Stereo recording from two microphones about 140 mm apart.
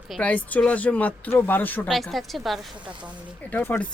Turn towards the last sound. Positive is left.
turn(degrees=15)  # may be behind; listen again after turning